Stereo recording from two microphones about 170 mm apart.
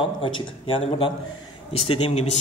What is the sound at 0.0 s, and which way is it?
A man's voice, 30° left (ahead or behind).